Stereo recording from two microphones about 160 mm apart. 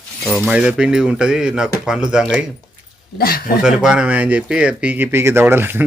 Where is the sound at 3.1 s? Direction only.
70° left (ahead or behind).